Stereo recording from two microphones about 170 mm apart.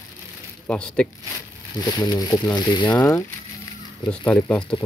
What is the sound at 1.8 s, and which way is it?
Speech, 25° left (ahead or behind).